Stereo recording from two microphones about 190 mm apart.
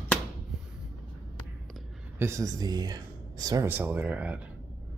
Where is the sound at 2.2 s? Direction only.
15° right (ahead or behind).